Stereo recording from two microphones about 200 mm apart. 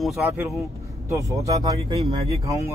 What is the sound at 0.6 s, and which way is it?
Speech, 15° right (ahead or behind).